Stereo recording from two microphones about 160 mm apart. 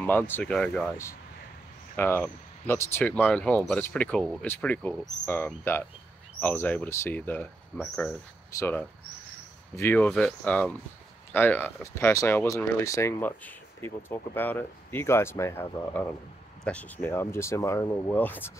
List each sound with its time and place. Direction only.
0.0 s speech: 10° left (ahead or behind)
2.0 s speech: 15° left (ahead or behind)